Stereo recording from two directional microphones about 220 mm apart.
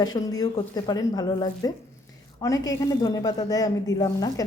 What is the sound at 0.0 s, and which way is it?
A woman's voice, 15° left (ahead or behind).